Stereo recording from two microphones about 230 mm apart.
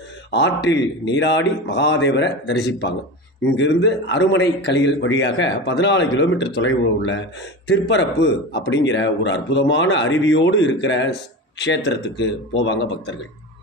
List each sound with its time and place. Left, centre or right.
0.3 s a man's voice: left